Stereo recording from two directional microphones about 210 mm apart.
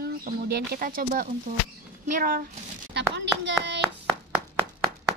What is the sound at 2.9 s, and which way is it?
Speech, 55° right (ahead or behind).